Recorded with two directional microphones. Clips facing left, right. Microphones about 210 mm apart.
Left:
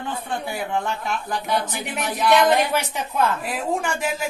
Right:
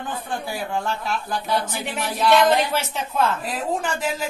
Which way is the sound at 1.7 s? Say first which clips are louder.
Even; 20° left (ahead or behind).